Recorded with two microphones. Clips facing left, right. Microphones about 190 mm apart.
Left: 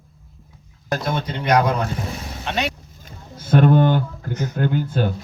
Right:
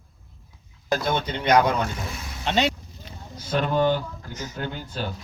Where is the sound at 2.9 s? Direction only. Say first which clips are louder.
Even; 50° left (ahead or behind).